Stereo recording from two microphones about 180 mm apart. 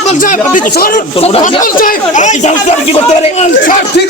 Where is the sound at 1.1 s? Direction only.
35° left (ahead or behind).